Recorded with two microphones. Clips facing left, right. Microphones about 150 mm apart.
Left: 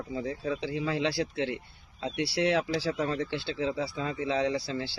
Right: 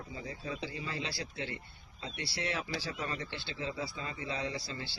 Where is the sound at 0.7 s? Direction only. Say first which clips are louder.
Left 11 dB; 80° left.